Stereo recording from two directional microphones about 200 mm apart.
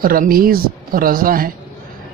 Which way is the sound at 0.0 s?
45° right (ahead or behind).